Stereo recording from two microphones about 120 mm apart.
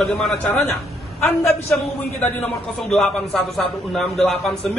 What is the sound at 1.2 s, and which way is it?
Speech, 20° left (ahead or behind).